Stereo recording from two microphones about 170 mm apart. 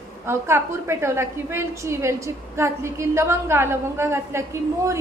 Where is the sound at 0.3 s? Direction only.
15° right (ahead or behind).